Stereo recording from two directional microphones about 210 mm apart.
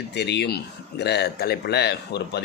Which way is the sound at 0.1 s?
55° left (ahead or behind).